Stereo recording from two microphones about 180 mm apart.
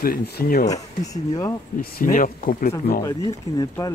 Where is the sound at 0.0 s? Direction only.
55° left (ahead or behind).